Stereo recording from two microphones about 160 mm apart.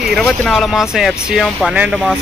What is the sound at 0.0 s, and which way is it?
Speech, centre (ahead or behind).